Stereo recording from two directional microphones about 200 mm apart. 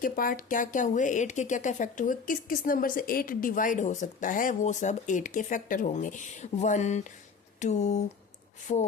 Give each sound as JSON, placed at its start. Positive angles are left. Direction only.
{"t": 0.0, "sound": "a woman's voice", "side_deg": 45}